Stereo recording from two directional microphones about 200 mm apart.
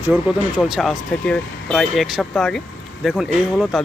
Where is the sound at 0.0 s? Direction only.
5° right (ahead or behind).